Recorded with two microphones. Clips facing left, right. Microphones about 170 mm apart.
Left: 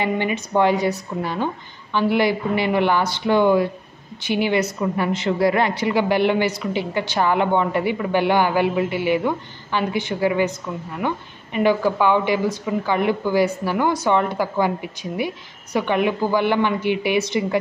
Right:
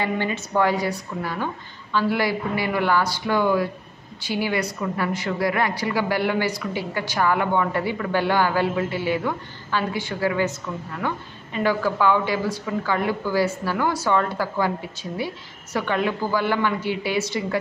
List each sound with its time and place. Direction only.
0.0 s a woman's voice: 20° left (ahead or behind)